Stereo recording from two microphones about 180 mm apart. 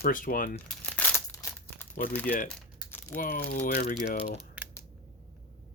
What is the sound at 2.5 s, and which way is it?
Typing, 10° left (ahead or behind).